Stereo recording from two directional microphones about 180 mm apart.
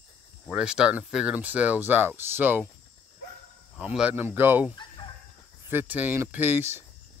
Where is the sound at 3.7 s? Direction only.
5° right (ahead or behind).